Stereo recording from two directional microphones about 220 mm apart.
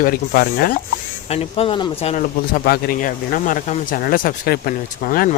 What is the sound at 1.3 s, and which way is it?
Speech, 25° left (ahead or behind).